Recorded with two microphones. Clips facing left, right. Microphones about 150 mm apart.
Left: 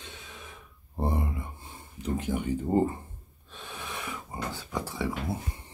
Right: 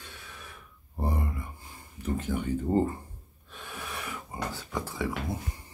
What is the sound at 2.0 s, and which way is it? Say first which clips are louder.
Speech: left 1 dB; 15° left (ahead or behind).